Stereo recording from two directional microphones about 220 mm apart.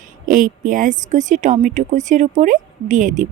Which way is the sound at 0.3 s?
35° right (ahead or behind).